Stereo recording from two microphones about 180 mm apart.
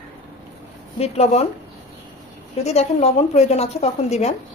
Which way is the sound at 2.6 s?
35° left (ahead or behind).